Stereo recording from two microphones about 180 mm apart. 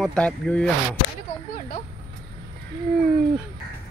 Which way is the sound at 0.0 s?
5° left (ahead or behind).